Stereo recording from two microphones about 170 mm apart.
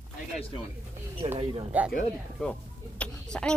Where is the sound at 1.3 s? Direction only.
35° right (ahead or behind).